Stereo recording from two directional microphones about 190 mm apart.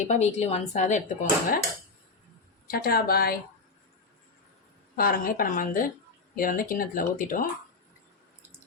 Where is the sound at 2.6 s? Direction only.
50° left (ahead or behind).